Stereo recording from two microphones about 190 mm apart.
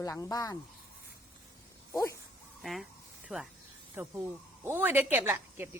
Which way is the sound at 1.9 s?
15° left (ahead or behind).